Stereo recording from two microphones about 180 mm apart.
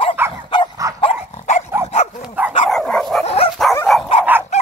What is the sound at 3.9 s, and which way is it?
Dog, centre (ahead or behind).